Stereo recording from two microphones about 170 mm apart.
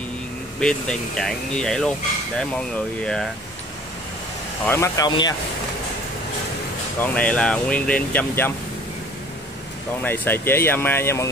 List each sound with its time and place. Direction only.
0.6 s speech: 5° left (ahead or behind)
4.6 s speech: 15° left (ahead or behind)
7.0 s speech: 10° left (ahead or behind)
10.0 s speech: 10° left (ahead or behind)